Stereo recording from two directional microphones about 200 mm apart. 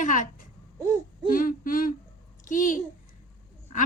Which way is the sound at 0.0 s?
40° left (ahead or behind).